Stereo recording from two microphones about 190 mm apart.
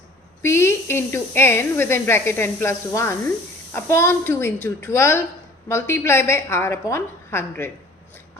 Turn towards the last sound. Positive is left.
turn(degrees=10)  # may be behind; listen again after turning